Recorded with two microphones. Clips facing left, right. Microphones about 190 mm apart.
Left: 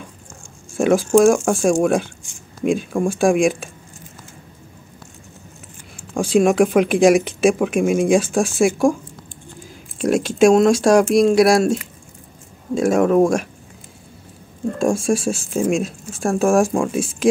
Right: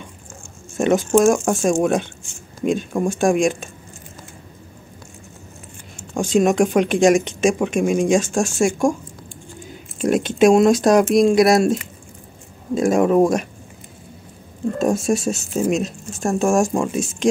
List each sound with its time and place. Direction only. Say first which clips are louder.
0.7 s speech: left 2 dB; 5° left (ahead or behind)
6.1 s speech: left 1 dB; centre (ahead or behind)
15.0 s speech: left 1 dB; centre (ahead or behind)